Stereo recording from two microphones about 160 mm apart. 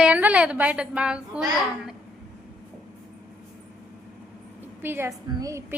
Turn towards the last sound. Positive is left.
turn(degrees=-20)  # may be behind; listen again after turning